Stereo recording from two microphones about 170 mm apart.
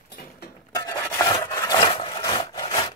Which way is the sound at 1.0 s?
20° left (ahead or behind).